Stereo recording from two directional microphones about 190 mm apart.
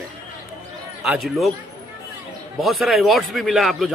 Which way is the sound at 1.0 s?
Centre (ahead or behind).